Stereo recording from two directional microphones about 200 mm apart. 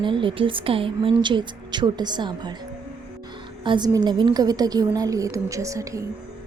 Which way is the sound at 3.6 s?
20° right (ahead or behind).